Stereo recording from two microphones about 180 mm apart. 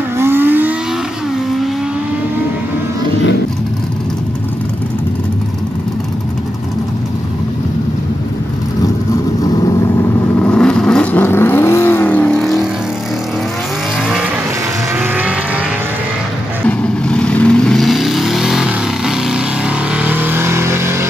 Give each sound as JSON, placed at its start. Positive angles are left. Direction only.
{"t": 0.2, "sound": "vehicle", "side_deg": -10}
{"t": 9.4, "sound": "vehicle", "side_deg": 20}
{"t": 10.4, "sound": "vehicle", "side_deg": 5}
{"t": 15.0, "sound": "vehicle", "side_deg": -10}
{"t": 16.6, "sound": "vehicle", "side_deg": 5}